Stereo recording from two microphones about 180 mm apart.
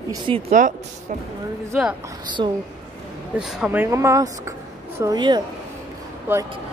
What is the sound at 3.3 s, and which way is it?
A woman's voice, 5° right (ahead or behind).